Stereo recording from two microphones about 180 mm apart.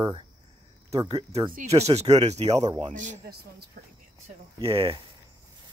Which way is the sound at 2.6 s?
25° right (ahead or behind).